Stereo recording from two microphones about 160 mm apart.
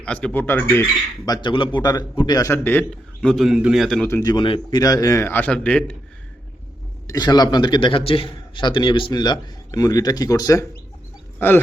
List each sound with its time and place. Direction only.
0.0 s a man's voice: 5° left (ahead or behind)
1.2 s a man's voice: 25° left (ahead or behind)
3.2 s a man's voice: centre (ahead or behind)
4.1 s a man's voice: 25° left (ahead or behind)
4.4 s a man's voice: 35° left (ahead or behind)
4.8 s a man's voice: 20° left (ahead or behind); by 6.0 s 5° left (ahead or behind)
7.1 s a man's voice: 25° left (ahead or behind)